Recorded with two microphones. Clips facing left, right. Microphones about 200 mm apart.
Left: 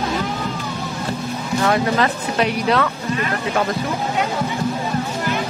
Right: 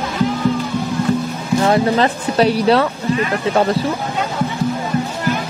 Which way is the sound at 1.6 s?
30° right (ahead or behind).